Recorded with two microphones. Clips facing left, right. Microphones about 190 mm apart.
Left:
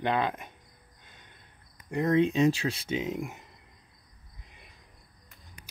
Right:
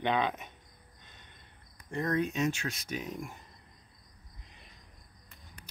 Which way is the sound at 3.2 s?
20° left (ahead or behind).